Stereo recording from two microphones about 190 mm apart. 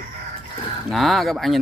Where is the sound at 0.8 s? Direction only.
Centre (ahead or behind).